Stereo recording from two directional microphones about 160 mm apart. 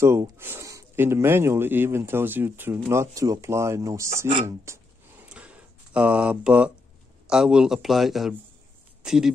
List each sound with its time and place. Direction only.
0.0 s speech: 15° right (ahead or behind)
5.3 s a sound: 10° right (ahead or behind)
7.2 s a man's voice: 5° right (ahead or behind)